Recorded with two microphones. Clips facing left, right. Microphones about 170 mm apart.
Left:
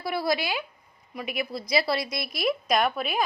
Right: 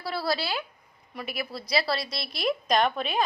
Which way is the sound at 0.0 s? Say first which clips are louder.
Left 2 dB; 15° left (ahead or behind).